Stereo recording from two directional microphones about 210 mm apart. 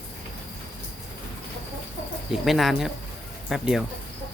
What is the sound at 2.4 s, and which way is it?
Speech, centre (ahead or behind).